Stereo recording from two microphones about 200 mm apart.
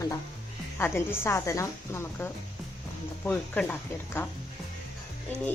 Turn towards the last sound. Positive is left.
turn(degrees=5)  # may be behind; listen again after turning